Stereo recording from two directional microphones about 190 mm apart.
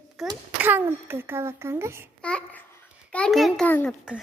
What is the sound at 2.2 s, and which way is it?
Babbling, 5° left (ahead or behind).